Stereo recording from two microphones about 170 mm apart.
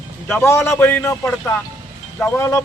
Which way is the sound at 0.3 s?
15° left (ahead or behind).